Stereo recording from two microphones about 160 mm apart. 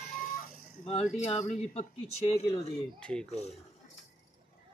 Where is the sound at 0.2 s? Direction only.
60° left (ahead or behind).